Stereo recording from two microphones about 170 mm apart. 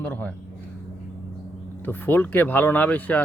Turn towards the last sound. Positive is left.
turn(degrees=10)  # may be behind; listen again after turning